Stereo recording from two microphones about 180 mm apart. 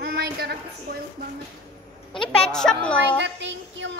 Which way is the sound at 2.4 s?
5° left (ahead or behind).